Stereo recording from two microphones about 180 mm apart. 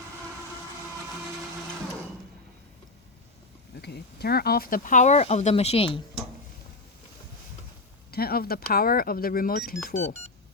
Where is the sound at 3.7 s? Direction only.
65° left (ahead or behind); by 6.0 s 30° left (ahead or behind).